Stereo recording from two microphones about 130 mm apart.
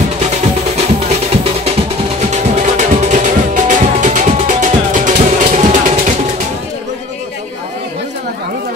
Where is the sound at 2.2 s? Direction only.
65° right (ahead or behind).